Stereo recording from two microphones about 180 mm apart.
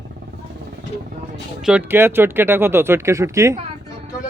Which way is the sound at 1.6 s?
10° right (ahead or behind).